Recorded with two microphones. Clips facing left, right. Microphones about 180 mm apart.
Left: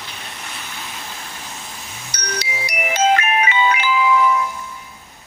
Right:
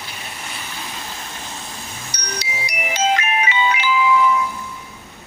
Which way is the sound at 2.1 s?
55° left (ahead or behind).